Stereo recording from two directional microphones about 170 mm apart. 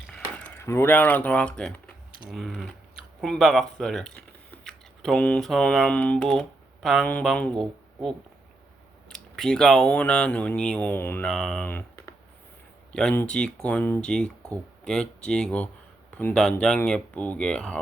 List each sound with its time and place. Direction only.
0.1 s speech: 5° left (ahead or behind)
9.0 s speech: 5° left (ahead or behind)